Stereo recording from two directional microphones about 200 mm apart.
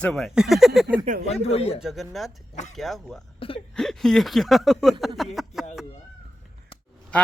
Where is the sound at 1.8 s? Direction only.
Centre (ahead or behind).